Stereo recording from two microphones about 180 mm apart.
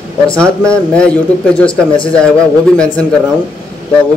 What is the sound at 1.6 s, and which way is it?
Speech, 30° left (ahead or behind).